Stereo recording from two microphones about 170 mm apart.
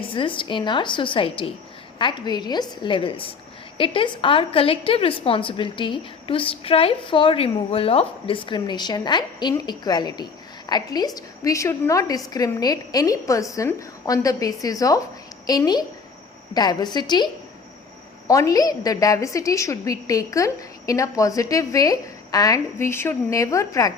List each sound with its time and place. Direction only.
0.0 s a woman's voice: 30° left (ahead or behind)
18.3 s a woman's voice: 20° left (ahead or behind)